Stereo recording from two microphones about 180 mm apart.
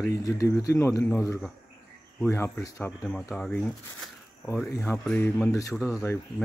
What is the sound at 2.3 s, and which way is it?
Speech, 15° left (ahead or behind).